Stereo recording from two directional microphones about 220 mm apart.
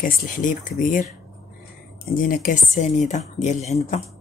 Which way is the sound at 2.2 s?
40° left (ahead or behind).